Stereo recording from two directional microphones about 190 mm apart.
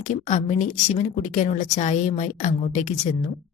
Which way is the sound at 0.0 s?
35° left (ahead or behind).